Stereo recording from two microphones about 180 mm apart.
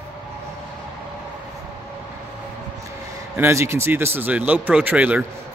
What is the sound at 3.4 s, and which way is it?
Speech, 15° right (ahead or behind).